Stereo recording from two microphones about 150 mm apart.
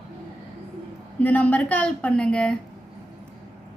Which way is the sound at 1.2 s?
10° left (ahead or behind).